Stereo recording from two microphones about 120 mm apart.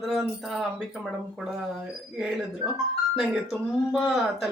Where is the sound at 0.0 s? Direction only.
Centre (ahead or behind).